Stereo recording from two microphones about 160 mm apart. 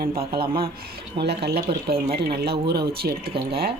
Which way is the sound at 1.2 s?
90° right.